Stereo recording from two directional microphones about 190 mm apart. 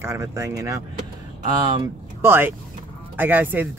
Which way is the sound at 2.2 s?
10° right (ahead or behind).